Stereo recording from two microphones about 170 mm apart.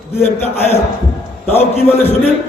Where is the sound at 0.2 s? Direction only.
40° left (ahead or behind).